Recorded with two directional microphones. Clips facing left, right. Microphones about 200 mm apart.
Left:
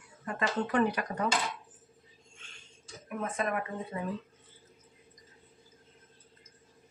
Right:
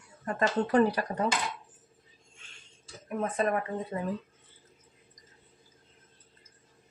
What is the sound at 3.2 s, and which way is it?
Speech, 35° right (ahead or behind).